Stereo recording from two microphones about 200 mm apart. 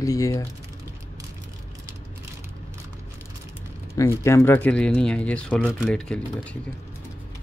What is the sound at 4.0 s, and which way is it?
Speech, 15° left (ahead or behind).